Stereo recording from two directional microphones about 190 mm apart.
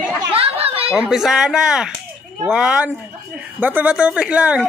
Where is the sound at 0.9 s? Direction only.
5° right (ahead or behind).